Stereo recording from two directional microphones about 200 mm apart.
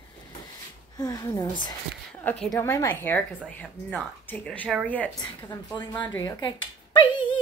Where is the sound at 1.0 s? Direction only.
20° left (ahead or behind).